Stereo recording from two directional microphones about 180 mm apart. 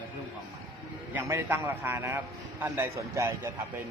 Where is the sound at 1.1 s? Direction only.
15° right (ahead or behind).